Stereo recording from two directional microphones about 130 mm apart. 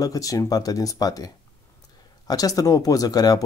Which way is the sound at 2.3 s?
30° left (ahead or behind).